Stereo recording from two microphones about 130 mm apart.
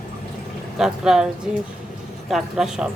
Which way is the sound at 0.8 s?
5° right (ahead or behind).